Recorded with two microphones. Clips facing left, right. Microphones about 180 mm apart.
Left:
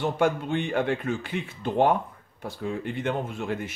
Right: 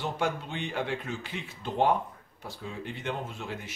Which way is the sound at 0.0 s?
55° left (ahead or behind).